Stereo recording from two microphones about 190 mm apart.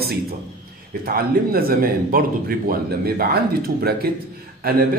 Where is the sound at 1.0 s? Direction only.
50° right (ahead or behind).